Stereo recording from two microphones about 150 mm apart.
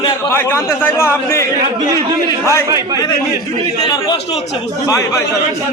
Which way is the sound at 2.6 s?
20° right (ahead or behind).